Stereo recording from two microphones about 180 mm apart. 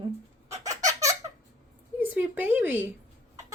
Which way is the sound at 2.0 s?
10° right (ahead or behind).